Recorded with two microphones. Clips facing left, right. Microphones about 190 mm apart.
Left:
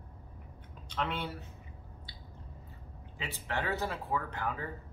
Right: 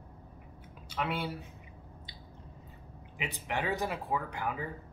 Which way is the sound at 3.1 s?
15° right (ahead or behind).